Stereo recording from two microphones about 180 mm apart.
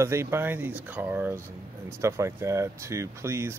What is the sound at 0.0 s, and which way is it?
Speech, 15° right (ahead or behind).